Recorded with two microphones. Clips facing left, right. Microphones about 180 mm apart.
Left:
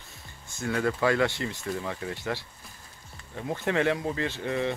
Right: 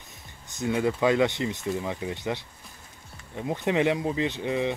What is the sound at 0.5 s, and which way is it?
Speech, 20° right (ahead or behind).